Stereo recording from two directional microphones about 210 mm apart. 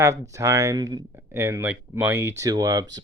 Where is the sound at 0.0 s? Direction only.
15° right (ahead or behind).